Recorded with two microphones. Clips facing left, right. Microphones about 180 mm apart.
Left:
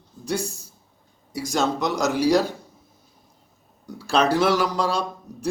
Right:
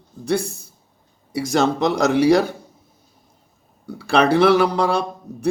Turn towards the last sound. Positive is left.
turn(degrees=-60)  # may be behind; listen again after turning